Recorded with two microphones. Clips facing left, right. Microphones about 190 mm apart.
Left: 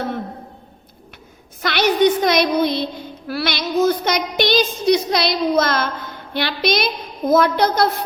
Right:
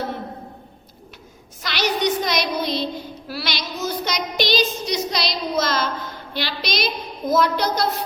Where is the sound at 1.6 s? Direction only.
55° left (ahead or behind).